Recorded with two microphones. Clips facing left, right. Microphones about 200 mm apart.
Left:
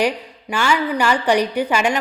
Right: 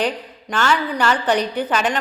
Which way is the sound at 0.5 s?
10° left (ahead or behind).